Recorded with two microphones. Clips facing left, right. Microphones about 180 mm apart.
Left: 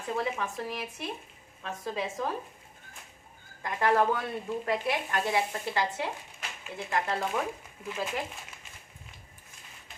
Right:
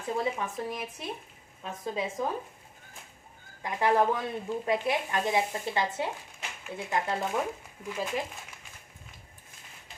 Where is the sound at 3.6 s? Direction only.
15° right (ahead or behind).